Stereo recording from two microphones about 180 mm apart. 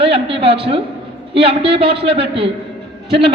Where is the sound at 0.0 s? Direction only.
30° right (ahead or behind).